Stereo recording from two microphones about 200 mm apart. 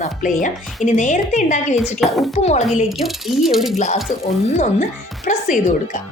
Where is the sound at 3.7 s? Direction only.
35° left (ahead or behind).